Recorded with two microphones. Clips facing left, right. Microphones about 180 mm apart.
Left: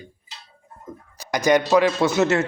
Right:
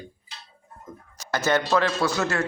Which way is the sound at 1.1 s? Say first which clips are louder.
Left 5 dB; 15° left (ahead or behind).